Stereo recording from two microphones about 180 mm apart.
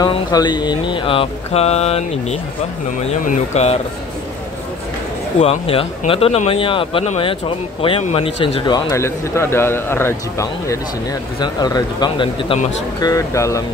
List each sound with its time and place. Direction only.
0.0 s speech: 20° left (ahead or behind); by 3.8 s 35° left (ahead or behind)
5.4 s a man's voice: 35° left (ahead or behind); by 13.7 s 15° left (ahead or behind)